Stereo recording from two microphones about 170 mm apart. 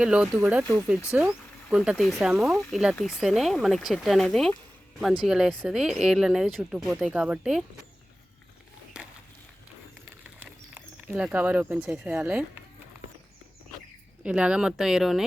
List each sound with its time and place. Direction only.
0.0 s speech: 5° right (ahead or behind)
8.9 s a sound: 5° right (ahead or behind)
10.2 s speech: 10° right (ahead or behind)
14.3 s speech: 5° right (ahead or behind)